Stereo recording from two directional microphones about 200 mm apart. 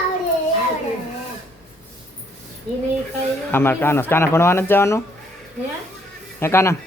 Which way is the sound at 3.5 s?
10° left (ahead or behind).